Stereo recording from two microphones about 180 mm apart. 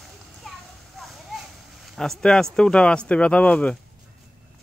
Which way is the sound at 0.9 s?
Centre (ahead or behind).